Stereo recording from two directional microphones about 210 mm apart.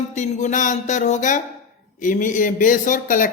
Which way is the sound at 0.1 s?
35° left (ahead or behind).